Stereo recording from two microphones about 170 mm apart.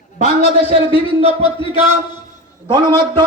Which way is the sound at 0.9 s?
30° left (ahead or behind).